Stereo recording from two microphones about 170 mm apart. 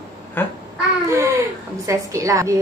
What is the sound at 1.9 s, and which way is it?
Speech, 20° right (ahead or behind).